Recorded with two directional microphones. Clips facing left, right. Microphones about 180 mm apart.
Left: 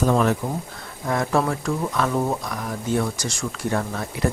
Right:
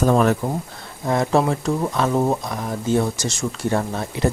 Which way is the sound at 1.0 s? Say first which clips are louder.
Right 3 dB; 25° right (ahead or behind).